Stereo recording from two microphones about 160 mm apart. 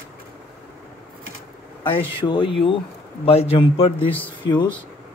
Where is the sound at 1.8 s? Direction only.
30° left (ahead or behind).